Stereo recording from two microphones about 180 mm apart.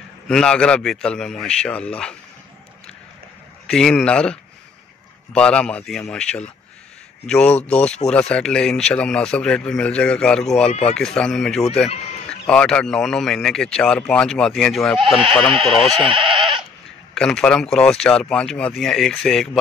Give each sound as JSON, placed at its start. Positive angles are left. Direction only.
{"t": 0.3, "sound": "a man's voice", "side_deg": 5}
{"t": 3.6, "sound": "a man's voice", "side_deg": 5}
{"t": 10.7, "sound": "speech", "side_deg": 35}
{"t": 11.0, "sound": "a man's voice", "side_deg": 5}
{"t": 16.0, "sound": "chicken", "side_deg": -30}
{"t": 17.1, "sound": "a man's voice", "side_deg": 5}